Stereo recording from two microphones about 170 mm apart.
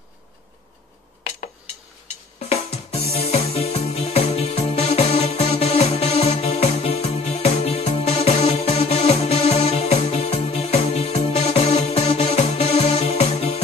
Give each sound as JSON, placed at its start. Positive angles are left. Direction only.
{"t": 2.3, "sound": "music", "side_deg": 35}